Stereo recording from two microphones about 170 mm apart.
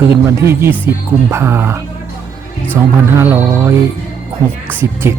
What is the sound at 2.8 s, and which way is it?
Speech, 15° right (ahead or behind).